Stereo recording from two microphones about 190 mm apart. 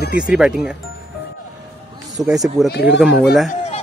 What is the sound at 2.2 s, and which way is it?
Speech, 20° right (ahead or behind).